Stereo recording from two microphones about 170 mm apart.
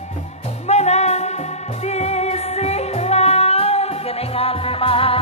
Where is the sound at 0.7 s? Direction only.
40° left (ahead or behind).